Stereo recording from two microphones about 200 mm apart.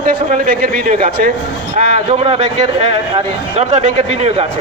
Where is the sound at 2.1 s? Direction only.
30° right (ahead or behind).